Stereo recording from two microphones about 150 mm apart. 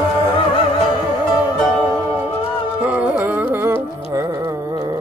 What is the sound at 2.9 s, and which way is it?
Music, 10° right (ahead or behind).